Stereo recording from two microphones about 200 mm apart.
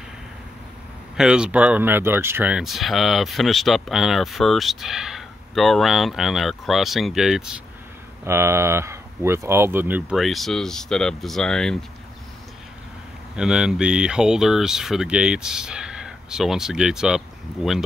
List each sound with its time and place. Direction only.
1.1 s speech: 5° right (ahead or behind)
8.3 s speech: 10° right (ahead or behind); by 11.8 s 5° left (ahead or behind)
13.4 s speech: 5° right (ahead or behind)